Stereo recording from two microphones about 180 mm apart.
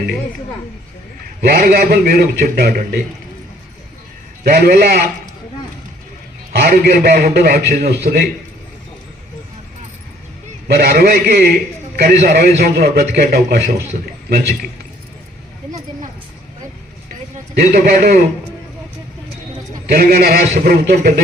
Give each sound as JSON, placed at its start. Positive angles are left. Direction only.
{"t": 1.4, "sound": "a man's voice", "side_deg": -60}
{"t": 4.4, "sound": "a man's voice", "side_deg": -60}
{"t": 6.5, "sound": "a man's voice", "side_deg": -60}
{"t": 10.7, "sound": "a man's voice", "side_deg": -60}
{"t": 17.3, "sound": "a man's voice", "side_deg": -55}
{"t": 19.9, "sound": "a man's voice", "side_deg": -60}